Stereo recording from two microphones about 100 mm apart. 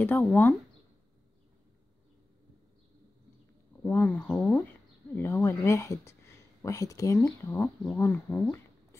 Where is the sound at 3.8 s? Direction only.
20° left (ahead or behind).